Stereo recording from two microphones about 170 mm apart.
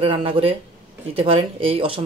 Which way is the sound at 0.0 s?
30° right (ahead or behind).